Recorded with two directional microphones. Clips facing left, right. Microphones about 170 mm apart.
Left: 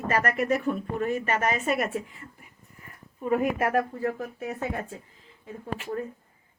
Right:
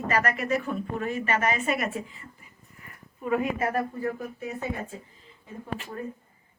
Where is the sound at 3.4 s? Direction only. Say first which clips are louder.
Left 2 dB; 65° left (ahead or behind).